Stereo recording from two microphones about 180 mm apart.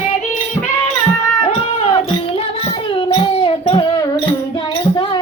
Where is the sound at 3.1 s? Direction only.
30° left (ahead or behind).